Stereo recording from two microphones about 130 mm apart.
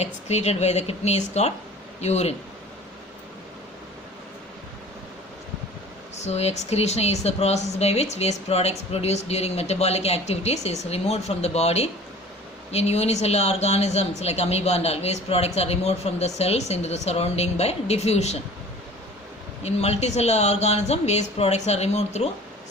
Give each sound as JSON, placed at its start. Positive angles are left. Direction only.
{"t": 0.0, "sound": "speech", "side_deg": 60}
{"t": 6.1, "sound": "speech", "side_deg": 55}
{"t": 19.6, "sound": "speech", "side_deg": 55}